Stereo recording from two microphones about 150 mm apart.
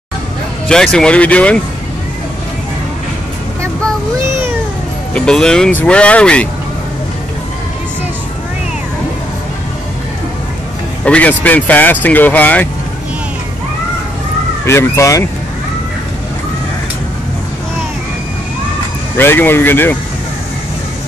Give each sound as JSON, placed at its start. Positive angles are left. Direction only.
{"t": 0.7, "sound": "speech", "side_deg": 5}
{"t": 5.1, "sound": "speech", "side_deg": 5}
{"t": 11.1, "sound": "speech", "side_deg": 10}
{"t": 14.7, "sound": "speech", "side_deg": 20}
{"t": 19.1, "sound": "speech", "side_deg": 15}